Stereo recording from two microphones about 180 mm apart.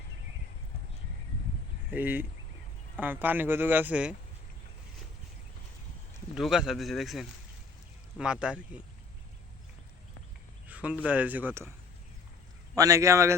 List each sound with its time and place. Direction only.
1.9 s speech: 10° right (ahead or behind)
6.3 s speech: centre (ahead or behind)
10.7 s speech: 5° right (ahead or behind)
12.7 s speech: 20° right (ahead or behind)